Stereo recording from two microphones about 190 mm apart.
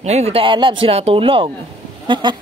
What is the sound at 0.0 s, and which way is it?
Speech, 35° right (ahead or behind).